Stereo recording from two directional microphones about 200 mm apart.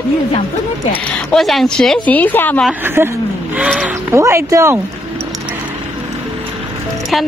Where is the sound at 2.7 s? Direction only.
10° right (ahead or behind).